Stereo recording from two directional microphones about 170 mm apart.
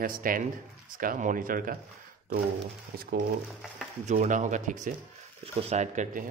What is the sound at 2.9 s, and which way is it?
Speech, 60° right (ahead or behind).